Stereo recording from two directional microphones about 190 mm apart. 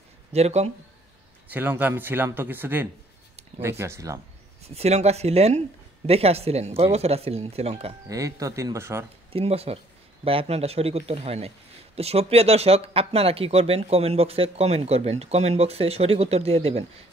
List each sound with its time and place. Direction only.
0.3 s speech: 35° right (ahead or behind)
1.5 s speech: 10° right (ahead or behind)
4.6 s speech: 35° right (ahead or behind)
8.1 s speech: 20° right (ahead or behind)
9.3 s speech: 30° right (ahead or behind)